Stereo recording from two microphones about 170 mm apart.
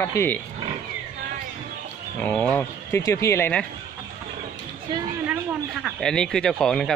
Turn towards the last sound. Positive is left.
turn(degrees=5)  # may be behind; listen again after turning